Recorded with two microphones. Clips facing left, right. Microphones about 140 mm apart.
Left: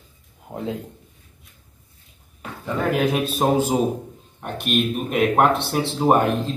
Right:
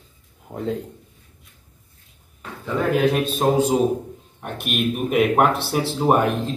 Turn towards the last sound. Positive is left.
turn(degrees=0)  # may be behind; listen again after turning